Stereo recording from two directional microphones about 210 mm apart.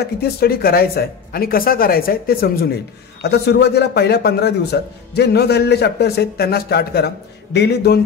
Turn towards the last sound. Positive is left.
turn(degrees=50)  # may be behind; listen again after turning